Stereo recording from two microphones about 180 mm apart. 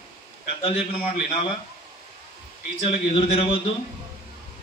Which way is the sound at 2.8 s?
30° left (ahead or behind).